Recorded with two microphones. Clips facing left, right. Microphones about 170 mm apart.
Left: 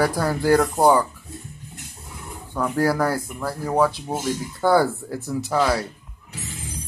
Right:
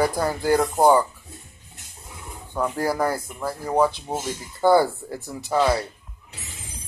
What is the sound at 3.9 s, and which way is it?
Speech, centre (ahead or behind).